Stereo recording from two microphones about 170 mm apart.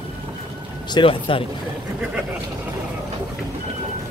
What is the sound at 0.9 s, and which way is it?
Speech, 30° left (ahead or behind).